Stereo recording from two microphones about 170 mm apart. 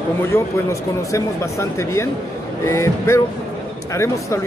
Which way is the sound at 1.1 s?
15° left (ahead or behind).